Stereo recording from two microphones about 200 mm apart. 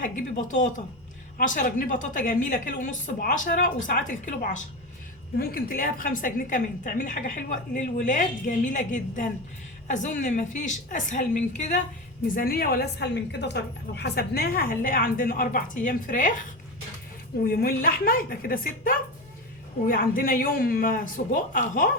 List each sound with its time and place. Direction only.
0.0 s a woman's voice: 40° left (ahead or behind)
12.3 s a woman's voice: 45° left (ahead or behind)
17.4 s a woman's voice: 50° left (ahead or behind)